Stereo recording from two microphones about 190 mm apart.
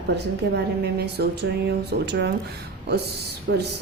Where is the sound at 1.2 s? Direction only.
60° right (ahead or behind).